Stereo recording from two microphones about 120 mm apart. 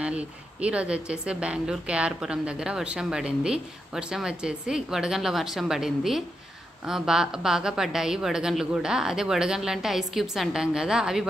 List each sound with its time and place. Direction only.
0.0 s a woman's voice: 10° right (ahead or behind)